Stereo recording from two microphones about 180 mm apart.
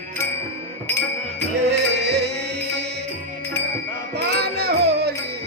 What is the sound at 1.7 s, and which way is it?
Music, 70° right (ahead or behind).